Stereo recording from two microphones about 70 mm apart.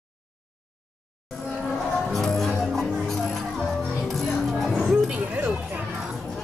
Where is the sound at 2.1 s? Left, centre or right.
Centre.